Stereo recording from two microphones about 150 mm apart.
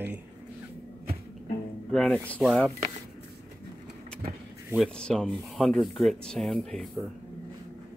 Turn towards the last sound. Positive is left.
turn(degrees=5)  # may be behind; listen again after turning